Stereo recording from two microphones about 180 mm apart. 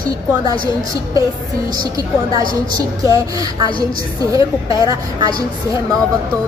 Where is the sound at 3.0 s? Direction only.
20° right (ahead or behind).